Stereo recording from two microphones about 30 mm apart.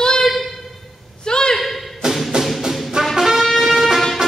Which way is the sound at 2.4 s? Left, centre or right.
Centre.